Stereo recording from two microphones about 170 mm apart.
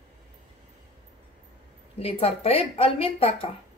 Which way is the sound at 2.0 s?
35° left (ahead or behind).